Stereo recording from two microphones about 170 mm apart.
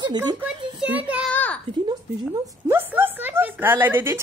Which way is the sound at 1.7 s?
25° right (ahead or behind).